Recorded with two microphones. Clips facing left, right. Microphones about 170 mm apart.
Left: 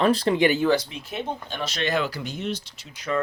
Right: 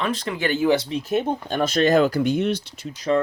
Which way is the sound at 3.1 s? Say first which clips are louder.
Right 5 dB; 30° right (ahead or behind).